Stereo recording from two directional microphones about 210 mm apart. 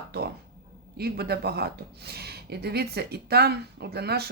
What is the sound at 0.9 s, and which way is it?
Speech, 50° right (ahead or behind).